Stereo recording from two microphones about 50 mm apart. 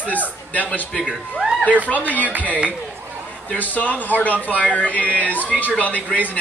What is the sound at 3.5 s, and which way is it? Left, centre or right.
Speech, left.